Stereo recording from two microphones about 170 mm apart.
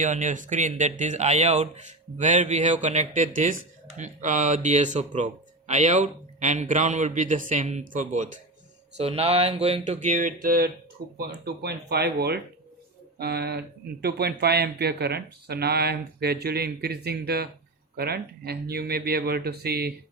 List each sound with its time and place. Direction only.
0.0 s speech: 45° right (ahead or behind)
9.0 s speech: 35° right (ahead or behind); by 10.7 s 60° right (ahead or behind)
11.0 s speech: 70° right (ahead or behind)